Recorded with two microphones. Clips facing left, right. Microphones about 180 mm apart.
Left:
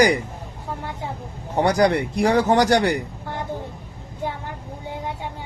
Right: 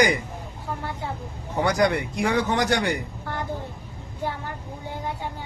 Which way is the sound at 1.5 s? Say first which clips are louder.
Left 4 dB; 35° left (ahead or behind).